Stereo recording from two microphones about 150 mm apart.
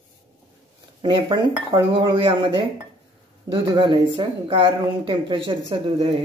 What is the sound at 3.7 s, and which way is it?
Speech, 30° right (ahead or behind).